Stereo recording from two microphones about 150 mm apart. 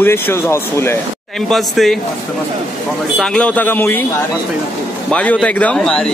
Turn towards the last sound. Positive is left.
turn(degrees=5)  # may be behind; listen again after turning